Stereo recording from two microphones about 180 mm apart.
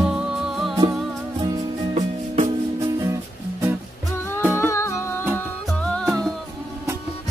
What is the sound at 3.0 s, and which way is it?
Music, 15° right (ahead or behind).